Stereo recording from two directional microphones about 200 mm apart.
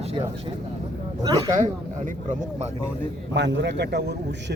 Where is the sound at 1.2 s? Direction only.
20° right (ahead or behind).